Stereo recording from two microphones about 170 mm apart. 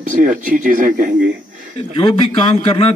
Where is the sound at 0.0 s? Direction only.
50° right (ahead or behind).